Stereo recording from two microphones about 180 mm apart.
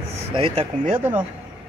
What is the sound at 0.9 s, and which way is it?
Speech, 10° right (ahead or behind).